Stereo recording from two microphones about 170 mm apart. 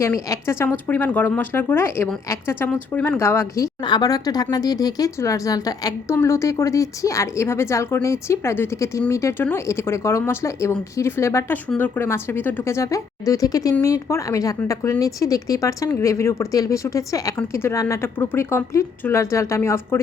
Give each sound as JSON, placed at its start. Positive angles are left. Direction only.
{"t": 0.0, "sound": "a woman's voice", "side_deg": 15}